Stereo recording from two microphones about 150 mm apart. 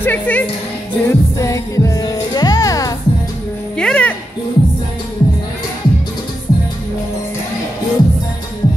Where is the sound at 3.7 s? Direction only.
5° left (ahead or behind).